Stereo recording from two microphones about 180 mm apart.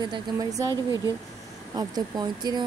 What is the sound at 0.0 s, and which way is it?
Speech, 20° right (ahead or behind).